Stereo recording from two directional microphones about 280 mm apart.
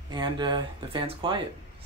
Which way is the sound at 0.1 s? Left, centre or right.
Centre.